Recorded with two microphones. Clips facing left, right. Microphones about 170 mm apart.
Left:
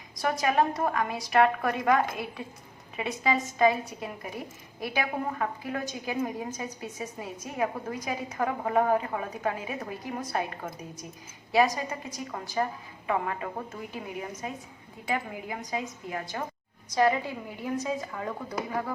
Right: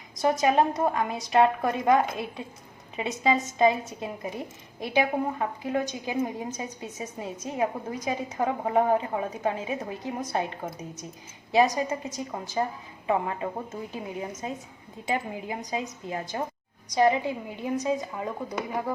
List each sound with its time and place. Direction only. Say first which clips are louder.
0.2 s a woman's voice: right 3 dB; 20° right (ahead or behind)